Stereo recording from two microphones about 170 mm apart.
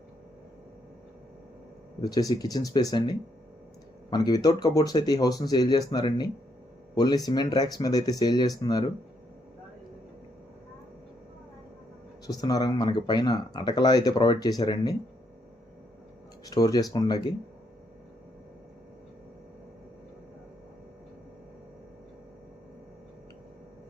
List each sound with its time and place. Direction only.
2.0 s speech: 20° left (ahead or behind)
12.3 s speech: 20° left (ahead or behind)
16.5 s speech: 20° left (ahead or behind)